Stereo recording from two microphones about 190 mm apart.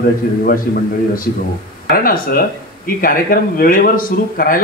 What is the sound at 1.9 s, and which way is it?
A man's voice, 50° left (ahead or behind).